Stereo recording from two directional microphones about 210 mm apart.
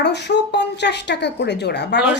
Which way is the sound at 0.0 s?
55° left (ahead or behind).